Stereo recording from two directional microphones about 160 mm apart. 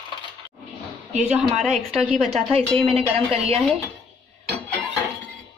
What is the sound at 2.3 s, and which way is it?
A woman's voice, 40° right (ahead or behind).